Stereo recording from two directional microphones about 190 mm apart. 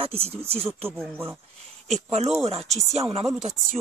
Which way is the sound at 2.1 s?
35° right (ahead or behind).